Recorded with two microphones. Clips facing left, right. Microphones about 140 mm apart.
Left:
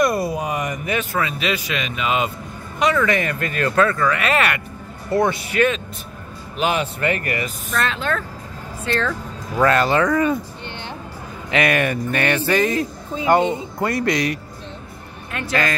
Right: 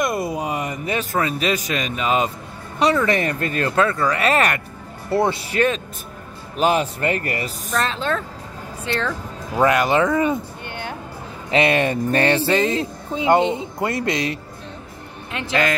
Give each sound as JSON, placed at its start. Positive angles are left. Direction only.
{"t": 0.0, "sound": "speech", "side_deg": -20}
{"t": 8.9, "sound": "speech", "side_deg": -20}
{"t": 11.5, "sound": "speech", "side_deg": -25}